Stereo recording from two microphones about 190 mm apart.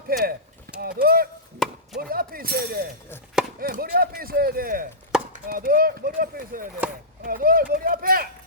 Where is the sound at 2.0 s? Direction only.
50° right (ahead or behind).